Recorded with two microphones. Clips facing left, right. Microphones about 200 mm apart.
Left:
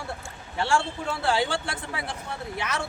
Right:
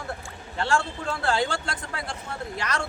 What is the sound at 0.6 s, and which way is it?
Speech, 10° left (ahead or behind).